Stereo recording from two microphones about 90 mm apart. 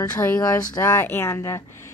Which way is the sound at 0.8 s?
25° left (ahead or behind).